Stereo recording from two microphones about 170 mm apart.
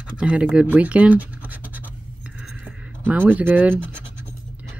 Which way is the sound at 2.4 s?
5° right (ahead or behind).